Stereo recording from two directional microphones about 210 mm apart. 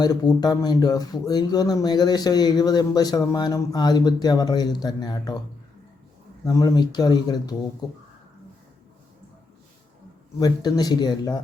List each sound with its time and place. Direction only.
0.0 s speech: 20° left (ahead or behind)
6.4 s speech: 15° left (ahead or behind)
10.4 s speech: 20° left (ahead or behind)